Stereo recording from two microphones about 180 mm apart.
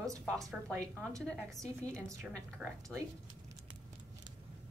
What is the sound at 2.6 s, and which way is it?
Speech, 5° right (ahead or behind).